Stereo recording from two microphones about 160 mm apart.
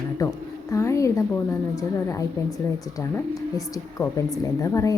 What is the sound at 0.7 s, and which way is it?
A woman's voice, 20° left (ahead or behind).